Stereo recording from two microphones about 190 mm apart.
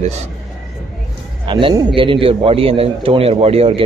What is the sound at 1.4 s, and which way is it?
A man's voice, 25° right (ahead or behind).